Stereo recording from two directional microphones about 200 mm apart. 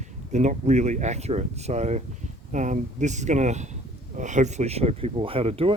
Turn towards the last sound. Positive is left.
turn(degrees=-30)  # may be behind; listen again after turning